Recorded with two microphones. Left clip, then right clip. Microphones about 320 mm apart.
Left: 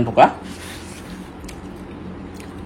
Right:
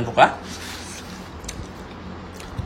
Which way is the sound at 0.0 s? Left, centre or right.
Centre.